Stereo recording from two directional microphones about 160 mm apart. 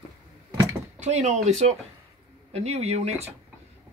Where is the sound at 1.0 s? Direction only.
45° right (ahead or behind).